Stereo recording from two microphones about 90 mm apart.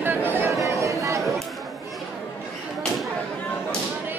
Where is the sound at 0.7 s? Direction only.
35° right (ahead or behind).